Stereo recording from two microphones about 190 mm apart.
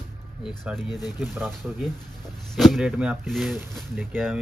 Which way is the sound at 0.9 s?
20° left (ahead or behind).